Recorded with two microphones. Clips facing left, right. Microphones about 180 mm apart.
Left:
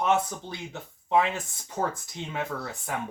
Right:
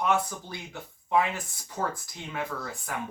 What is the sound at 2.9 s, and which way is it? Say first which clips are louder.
Speech: left 2 dB; 20° left (ahead or behind).